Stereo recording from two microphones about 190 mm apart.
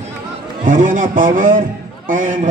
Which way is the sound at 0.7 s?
45° right (ahead or behind).